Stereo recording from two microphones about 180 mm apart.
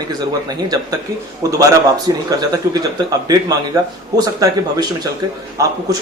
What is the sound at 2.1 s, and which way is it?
Speech, 20° right (ahead or behind).